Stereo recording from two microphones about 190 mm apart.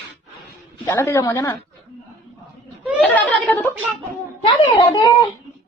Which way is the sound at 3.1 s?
5° left (ahead or behind).